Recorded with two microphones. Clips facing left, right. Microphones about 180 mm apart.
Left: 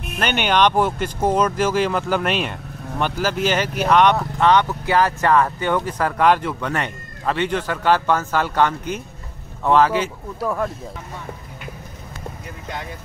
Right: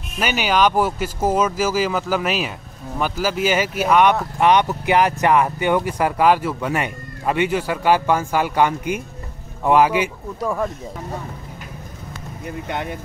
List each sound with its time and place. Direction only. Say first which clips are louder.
0.2 s speech: even; 5° right (ahead or behind)
10.4 s speech: even; centre (ahead or behind)
12.6 s speech: right 4 dB; 65° right (ahead or behind)